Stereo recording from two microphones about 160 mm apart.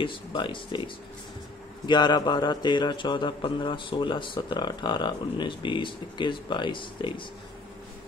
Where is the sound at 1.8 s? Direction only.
25° left (ahead or behind).